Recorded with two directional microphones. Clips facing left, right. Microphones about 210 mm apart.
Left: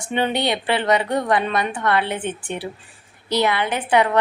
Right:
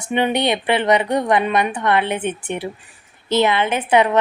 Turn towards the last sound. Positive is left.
turn(degrees=-20)  # may be behind; listen again after turning